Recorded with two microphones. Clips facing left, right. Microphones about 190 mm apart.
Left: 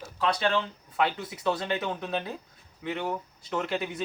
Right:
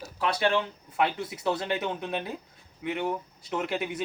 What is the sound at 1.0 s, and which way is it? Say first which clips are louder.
Speech: even; 25° right (ahead or behind).